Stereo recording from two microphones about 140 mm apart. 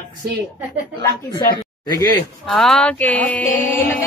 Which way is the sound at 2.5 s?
5° left (ahead or behind).